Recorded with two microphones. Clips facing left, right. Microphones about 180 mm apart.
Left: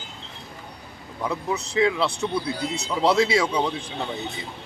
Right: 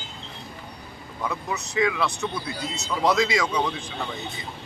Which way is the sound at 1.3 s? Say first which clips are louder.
Left 4 dB; 30° left (ahead or behind).